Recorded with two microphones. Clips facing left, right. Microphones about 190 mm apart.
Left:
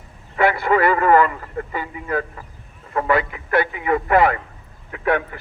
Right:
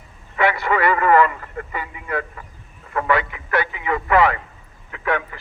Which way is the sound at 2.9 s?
40° left (ahead or behind).